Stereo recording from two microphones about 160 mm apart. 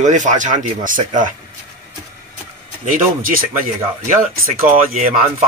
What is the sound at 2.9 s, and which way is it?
Speech, 60° right (ahead or behind).